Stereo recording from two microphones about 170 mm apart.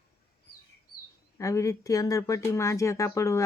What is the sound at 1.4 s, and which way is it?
Speech, 20° left (ahead or behind).